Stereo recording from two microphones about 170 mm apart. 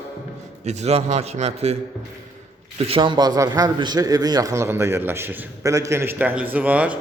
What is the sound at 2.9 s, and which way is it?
A man's voice, 30° right (ahead or behind).